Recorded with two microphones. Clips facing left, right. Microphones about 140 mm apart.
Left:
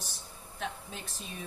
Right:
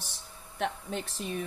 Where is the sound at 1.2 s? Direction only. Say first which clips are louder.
Right 8 dB; 60° right (ahead or behind).